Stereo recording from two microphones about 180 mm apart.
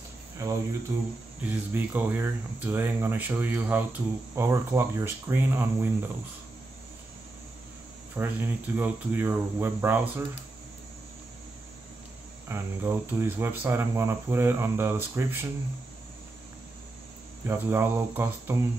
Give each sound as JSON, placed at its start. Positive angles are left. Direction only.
{"t": 0.9, "sound": "speech", "side_deg": -15}
{"t": 8.2, "sound": "speech", "side_deg": -10}
{"t": 12.4, "sound": "speech", "side_deg": -15}
{"t": 17.5, "sound": "speech", "side_deg": -15}